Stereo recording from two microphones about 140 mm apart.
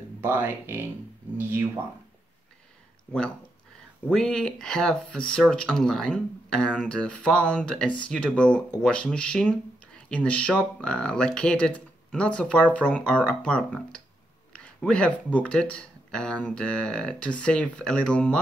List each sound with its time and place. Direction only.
0.2 s speech: 15° right (ahead or behind)
3.1 s speech: 5° left (ahead or behind)